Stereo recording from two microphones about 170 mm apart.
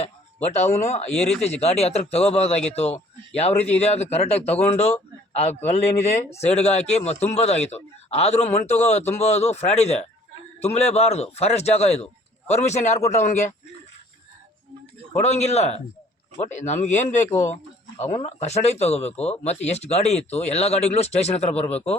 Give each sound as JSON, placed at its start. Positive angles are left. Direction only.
{"t": 0.4, "sound": "speech", "side_deg": 40}
{"t": 15.2, "sound": "speech", "side_deg": 40}